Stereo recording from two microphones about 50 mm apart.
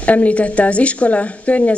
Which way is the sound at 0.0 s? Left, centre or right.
Left.